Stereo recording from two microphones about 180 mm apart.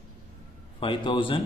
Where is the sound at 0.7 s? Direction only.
25° left (ahead or behind).